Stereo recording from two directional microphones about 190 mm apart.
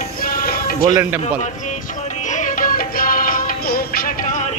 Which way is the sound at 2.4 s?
45° left (ahead or behind).